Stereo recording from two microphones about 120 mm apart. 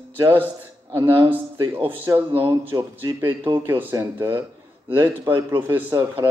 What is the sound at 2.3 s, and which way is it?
A man's voice, 45° right (ahead or behind).